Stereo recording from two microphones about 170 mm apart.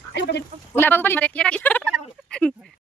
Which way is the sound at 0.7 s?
10° left (ahead or behind).